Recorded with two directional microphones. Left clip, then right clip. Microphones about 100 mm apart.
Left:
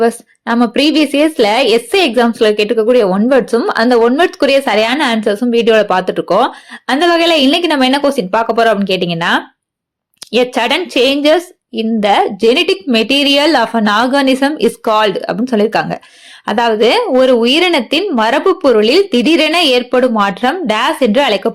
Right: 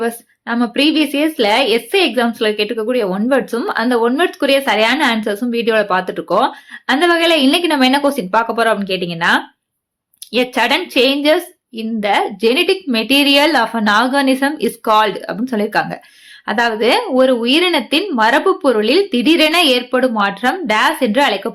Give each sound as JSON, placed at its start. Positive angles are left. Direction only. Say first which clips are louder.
{"t": 0.0, "sound": "speech", "louder": "left 7 dB", "side_deg": 40}